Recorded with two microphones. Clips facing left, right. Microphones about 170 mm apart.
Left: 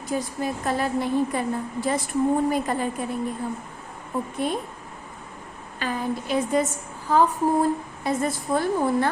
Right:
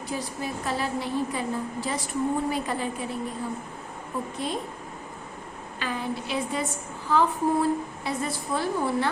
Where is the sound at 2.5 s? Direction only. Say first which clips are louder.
Left 4 dB; 45° left (ahead or behind).